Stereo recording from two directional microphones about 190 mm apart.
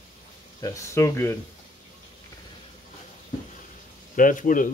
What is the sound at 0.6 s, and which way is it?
Speech, 15° left (ahead or behind).